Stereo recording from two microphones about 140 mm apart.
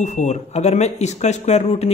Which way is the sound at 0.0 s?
55° left (ahead or behind).